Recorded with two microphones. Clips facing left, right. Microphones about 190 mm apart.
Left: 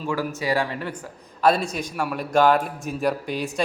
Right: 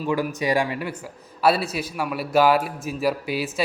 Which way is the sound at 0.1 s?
15° right (ahead or behind).